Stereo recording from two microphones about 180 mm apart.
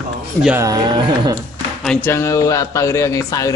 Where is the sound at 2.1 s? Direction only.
15° left (ahead or behind).